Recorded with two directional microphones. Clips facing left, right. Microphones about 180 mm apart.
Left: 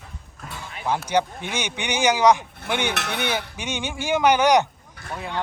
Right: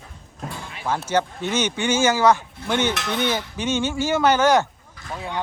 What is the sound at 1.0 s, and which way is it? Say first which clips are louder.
Speech: right 3 dB; 15° left (ahead or behind).